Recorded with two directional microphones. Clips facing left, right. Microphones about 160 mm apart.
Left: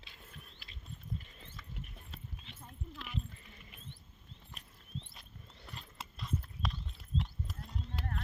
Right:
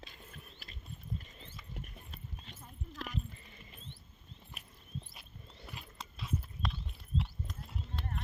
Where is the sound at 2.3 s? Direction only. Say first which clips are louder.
Right 1 dB; 40° right (ahead or behind).